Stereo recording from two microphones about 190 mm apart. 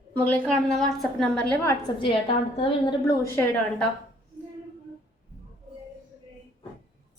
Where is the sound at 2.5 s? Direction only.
30° left (ahead or behind).